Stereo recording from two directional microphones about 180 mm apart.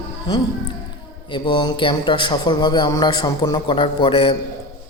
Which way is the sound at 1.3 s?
25° left (ahead or behind).